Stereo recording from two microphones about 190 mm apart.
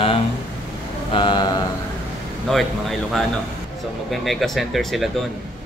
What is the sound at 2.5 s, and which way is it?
Speech, centre (ahead or behind).